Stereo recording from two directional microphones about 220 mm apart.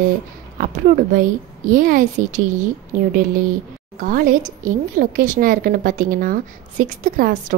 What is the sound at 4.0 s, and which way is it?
A woman's voice, 35° right (ahead or behind).